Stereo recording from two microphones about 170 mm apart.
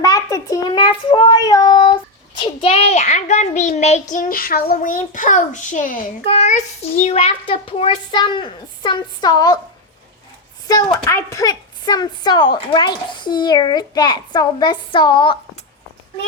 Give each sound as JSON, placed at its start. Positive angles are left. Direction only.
{"t": 0.0, "sound": "a child's voice", "side_deg": 20}
{"t": 6.2, "sound": "a child's voice", "side_deg": 40}
{"t": 10.7, "sound": "speech", "side_deg": 25}